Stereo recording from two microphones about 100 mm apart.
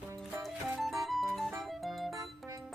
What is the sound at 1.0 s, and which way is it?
Music, centre (ahead or behind).